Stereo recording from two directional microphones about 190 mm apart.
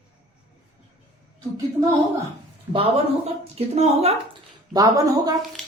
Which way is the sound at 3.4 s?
35° right (ahead or behind).